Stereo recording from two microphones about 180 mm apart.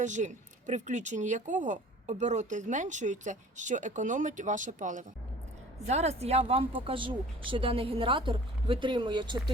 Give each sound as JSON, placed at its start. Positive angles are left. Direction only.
{"t": 0.0, "sound": "speech", "side_deg": -40}